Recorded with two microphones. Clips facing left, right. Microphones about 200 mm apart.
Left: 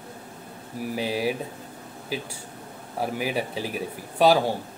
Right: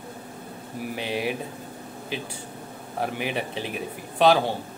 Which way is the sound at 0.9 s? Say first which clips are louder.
Left 2 dB; 35° left (ahead or behind).